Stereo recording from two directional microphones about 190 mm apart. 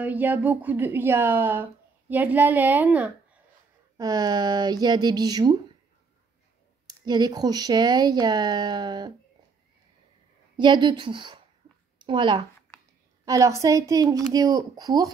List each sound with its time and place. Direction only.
0.0 s a woman's voice: 10° right (ahead or behind)
3.9 s speech: 20° right (ahead or behind)
6.9 s speech: 20° right (ahead or behind)
10.6 s a woman's voice: 25° right (ahead or behind)